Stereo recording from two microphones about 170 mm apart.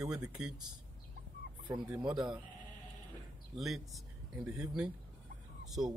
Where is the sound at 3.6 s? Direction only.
Centre (ahead or behind).